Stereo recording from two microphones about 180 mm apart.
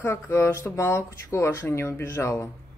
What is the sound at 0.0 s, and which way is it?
Speech, 15° left (ahead or behind).